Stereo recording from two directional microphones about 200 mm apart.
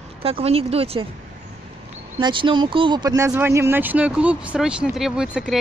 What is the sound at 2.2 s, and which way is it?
Speech, 25° right (ahead or behind).